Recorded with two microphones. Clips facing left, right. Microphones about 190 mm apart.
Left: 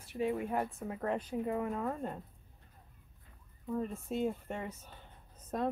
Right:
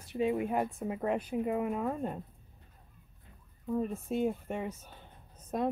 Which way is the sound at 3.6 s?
15° right (ahead or behind).